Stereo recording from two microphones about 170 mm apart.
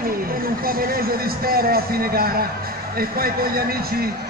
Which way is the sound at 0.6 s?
60° right (ahead or behind).